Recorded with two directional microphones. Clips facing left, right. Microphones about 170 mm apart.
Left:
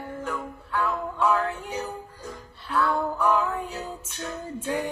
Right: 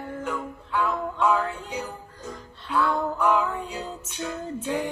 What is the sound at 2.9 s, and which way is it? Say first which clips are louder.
Music: even; 10° left (ahead or behind).